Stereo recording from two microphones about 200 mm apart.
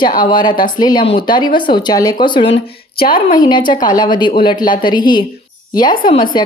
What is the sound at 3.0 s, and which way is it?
Speech, 45° left (ahead or behind).